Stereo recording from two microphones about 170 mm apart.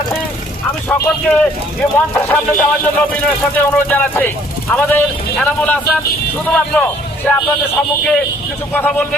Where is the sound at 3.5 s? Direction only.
10° left (ahead or behind).